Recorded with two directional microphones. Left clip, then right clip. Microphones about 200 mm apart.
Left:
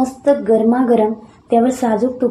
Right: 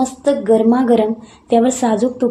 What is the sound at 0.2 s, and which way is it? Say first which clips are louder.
A woman's voice: even; 25° right (ahead or behind).